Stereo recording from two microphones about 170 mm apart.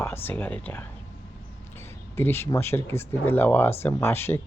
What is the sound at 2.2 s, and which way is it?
Speech, 15° left (ahead or behind).